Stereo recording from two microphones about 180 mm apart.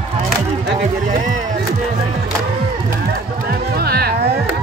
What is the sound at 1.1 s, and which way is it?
Music, 45° right (ahead or behind).